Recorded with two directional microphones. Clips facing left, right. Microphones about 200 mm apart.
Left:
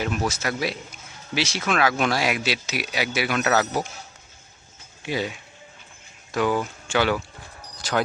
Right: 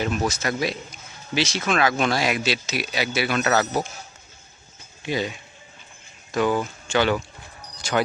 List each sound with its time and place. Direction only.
0.3 s speech: 5° left (ahead or behind)
5.0 s speech: 10° left (ahead or behind)
7.8 s a sound: centre (ahead or behind)